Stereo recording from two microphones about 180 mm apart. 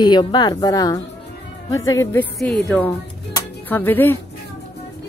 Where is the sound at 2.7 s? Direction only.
Centre (ahead or behind).